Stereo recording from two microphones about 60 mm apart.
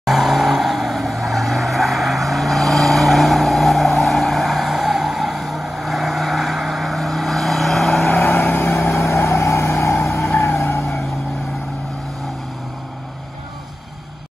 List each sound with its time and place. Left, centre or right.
0.0 s vehicle: centre
8.1 s vehicle: left
9.0 s vehicle: left
10.5 s vehicle: left